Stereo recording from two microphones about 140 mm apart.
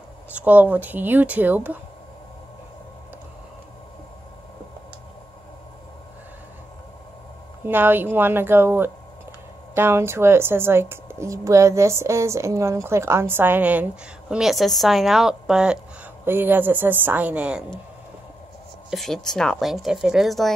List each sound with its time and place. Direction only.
0.3 s speech: 10° right (ahead or behind)
7.6 s a woman's voice: 15° right (ahead or behind)
18.9 s a woman's voice: centre (ahead or behind)